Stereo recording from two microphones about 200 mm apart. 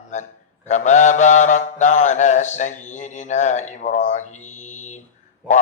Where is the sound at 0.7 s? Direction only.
35° left (ahead or behind).